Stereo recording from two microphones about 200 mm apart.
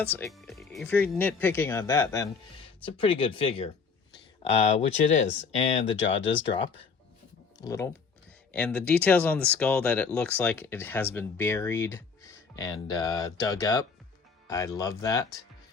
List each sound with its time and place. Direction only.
0.1 s speech: 5° left (ahead or behind)
2.8 s speech: 25° left (ahead or behind)